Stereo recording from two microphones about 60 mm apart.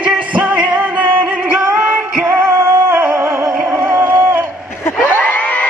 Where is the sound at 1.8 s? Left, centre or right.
Right.